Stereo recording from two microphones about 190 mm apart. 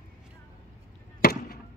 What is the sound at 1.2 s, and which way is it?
Chop, 50° left (ahead or behind).